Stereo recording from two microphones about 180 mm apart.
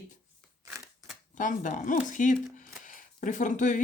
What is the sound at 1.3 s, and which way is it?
Speech, 45° left (ahead or behind).